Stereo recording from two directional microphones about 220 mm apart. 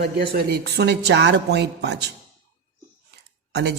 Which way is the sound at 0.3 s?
45° right (ahead or behind).